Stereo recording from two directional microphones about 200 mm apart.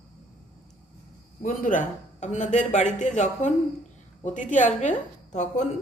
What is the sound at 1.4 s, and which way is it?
A man's voice, 40° left (ahead or behind).